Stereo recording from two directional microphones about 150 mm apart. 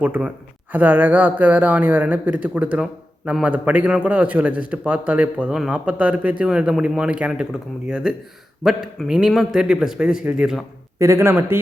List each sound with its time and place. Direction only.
0.0 s a man's voice: 10° right (ahead or behind)
10.9 s speech: 20° right (ahead or behind)